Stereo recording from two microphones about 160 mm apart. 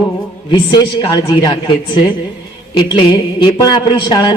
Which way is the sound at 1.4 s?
30° left (ahead or behind).